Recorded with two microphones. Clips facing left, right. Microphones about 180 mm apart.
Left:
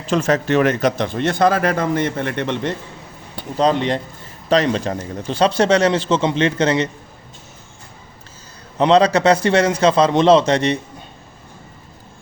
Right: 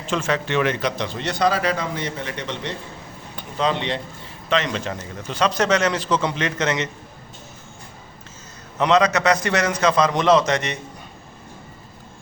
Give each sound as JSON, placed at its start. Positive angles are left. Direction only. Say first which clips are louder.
{"t": 0.1, "sound": "speech", "louder": "left 6 dB", "side_deg": 40}
{"t": 3.3, "sound": "a man's voice", "louder": "left 6 dB", "side_deg": 40}
{"t": 8.8, "sound": "a man's voice", "louder": "left 4 dB", "side_deg": 30}